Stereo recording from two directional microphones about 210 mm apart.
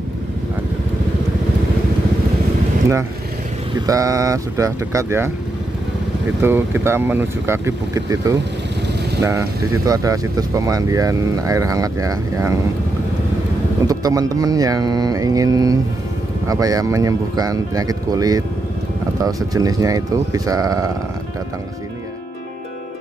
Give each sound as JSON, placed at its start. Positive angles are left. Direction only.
{"t": 3.7, "sound": "speech", "side_deg": -15}
{"t": 6.4, "sound": "speech", "side_deg": -10}
{"t": 13.8, "sound": "speech", "side_deg": -15}